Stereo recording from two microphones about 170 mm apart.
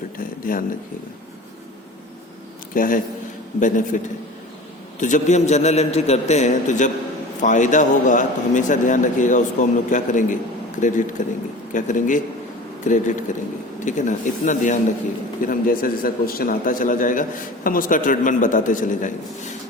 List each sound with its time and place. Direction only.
0.5 s a man's voice: 55° left (ahead or behind)
2.7 s a man's voice: 55° left (ahead or behind)